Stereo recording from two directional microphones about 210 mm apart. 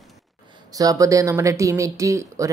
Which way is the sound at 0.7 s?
15° right (ahead or behind).